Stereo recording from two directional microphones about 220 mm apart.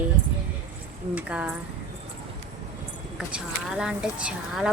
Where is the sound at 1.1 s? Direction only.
5° right (ahead or behind).